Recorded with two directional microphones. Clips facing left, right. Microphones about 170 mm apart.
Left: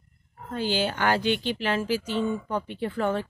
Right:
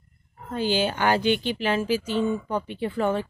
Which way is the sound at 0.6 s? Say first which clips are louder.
Right 2 dB; 15° right (ahead or behind).